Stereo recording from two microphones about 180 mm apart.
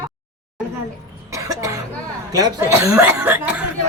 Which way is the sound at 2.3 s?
20° right (ahead or behind).